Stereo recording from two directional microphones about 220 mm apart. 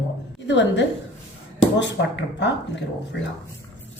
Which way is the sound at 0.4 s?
55° left (ahead or behind).